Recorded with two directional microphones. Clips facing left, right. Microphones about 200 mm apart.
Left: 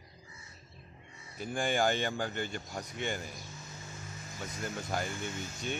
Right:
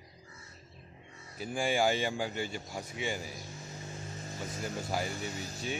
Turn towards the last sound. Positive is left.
turn(degrees=-40)  # may be behind; listen again after turning